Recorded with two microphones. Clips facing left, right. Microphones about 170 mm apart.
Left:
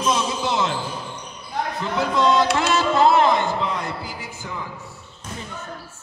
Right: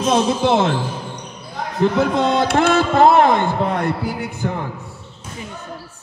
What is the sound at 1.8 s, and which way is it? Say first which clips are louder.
A man's voice: right 6 dB; 55° right (ahead or behind).